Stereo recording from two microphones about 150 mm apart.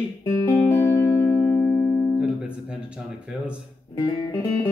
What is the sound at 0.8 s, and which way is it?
Music, 25° left (ahead or behind).